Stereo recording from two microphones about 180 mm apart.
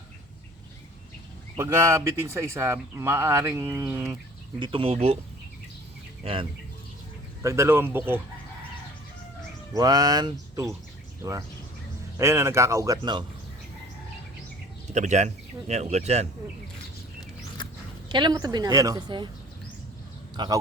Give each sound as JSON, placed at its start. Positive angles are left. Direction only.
{"t": 1.5, "sound": "speech", "side_deg": -15}
{"t": 4.6, "sound": "speech", "side_deg": -30}
{"t": 6.2, "sound": "a woman's voice", "side_deg": -30}
{"t": 7.4, "sound": "speech", "side_deg": -15}
{"t": 9.7, "sound": "a woman's voice", "side_deg": -20}
{"t": 14.9, "sound": "speech", "side_deg": -40}
{"t": 18.1, "sound": "a woman's voice", "side_deg": -25}
{"t": 20.3, "sound": "speech", "side_deg": -25}